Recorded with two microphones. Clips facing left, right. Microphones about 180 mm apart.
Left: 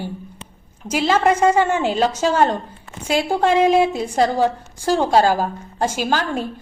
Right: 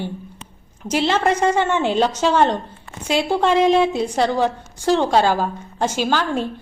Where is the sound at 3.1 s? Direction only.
45° left (ahead or behind).